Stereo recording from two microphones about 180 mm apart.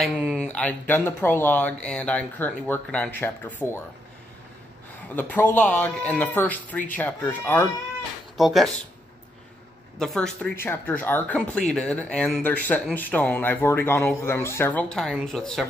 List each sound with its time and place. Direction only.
0.0 s a sound: centre (ahead or behind)
0.5 s speech: 10° left (ahead or behind)
5.1 s speech: 10° left (ahead or behind)
8.4 s speech: centre (ahead or behind)
9.9 s speech: 5° left (ahead or behind)